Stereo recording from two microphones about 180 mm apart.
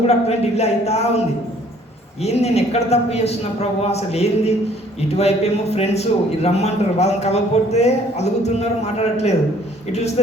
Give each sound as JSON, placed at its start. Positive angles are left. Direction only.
{"t": 0.1, "sound": "a man's voice", "side_deg": 35}
{"t": 2.2, "sound": "a man's voice", "side_deg": 35}